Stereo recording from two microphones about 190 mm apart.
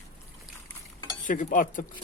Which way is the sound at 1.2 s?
45° left (ahead or behind).